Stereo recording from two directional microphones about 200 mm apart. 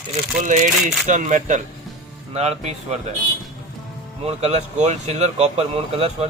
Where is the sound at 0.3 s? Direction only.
40° right (ahead or behind).